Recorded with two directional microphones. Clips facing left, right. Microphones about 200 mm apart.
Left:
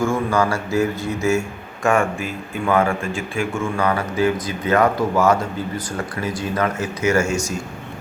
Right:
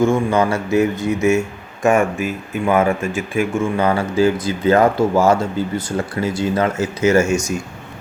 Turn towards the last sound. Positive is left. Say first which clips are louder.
# right 4 dB
turn(degrees=-25)  # may be behind; listen again after turning